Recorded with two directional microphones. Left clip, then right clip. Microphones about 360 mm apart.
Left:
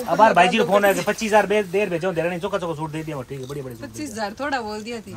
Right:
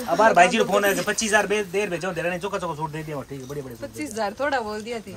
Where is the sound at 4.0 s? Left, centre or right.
Centre.